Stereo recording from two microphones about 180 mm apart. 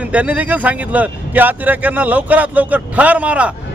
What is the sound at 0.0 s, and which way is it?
A man's voice, 10° right (ahead or behind).